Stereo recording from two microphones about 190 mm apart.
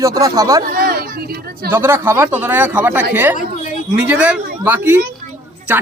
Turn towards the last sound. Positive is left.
turn(degrees=-10)  # may be behind; listen again after turning